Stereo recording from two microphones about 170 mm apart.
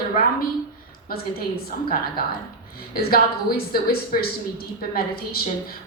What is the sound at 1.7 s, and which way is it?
A woman's voice, 60° left (ahead or behind).